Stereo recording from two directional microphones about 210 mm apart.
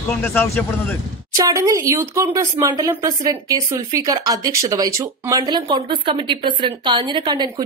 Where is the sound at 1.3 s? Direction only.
15° right (ahead or behind).